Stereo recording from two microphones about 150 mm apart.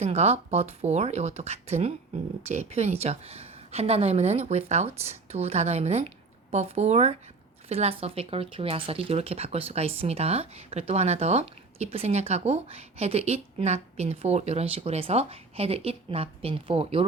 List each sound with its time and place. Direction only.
0.0 s a woman's voice: 45° right (ahead or behind)